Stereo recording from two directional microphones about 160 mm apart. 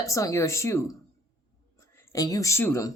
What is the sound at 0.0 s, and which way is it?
Speech, 20° left (ahead or behind).